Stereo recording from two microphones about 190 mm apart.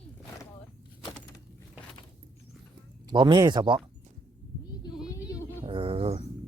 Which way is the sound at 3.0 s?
25° right (ahead or behind).